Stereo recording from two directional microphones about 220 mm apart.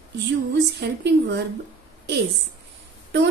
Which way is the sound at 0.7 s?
50° right (ahead or behind).